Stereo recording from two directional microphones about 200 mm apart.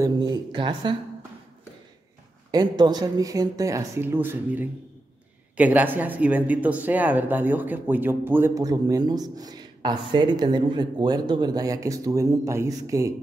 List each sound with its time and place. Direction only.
0.0 s speech: 20° right (ahead or behind)
2.5 s speech: 20° right (ahead or behind)